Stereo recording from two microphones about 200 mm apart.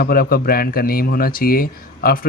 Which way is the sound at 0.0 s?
50° left (ahead or behind).